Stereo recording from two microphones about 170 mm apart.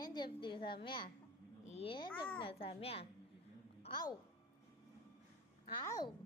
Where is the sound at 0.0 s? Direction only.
25° left (ahead or behind).